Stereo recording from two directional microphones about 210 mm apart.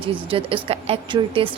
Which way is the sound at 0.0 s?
25° right (ahead or behind).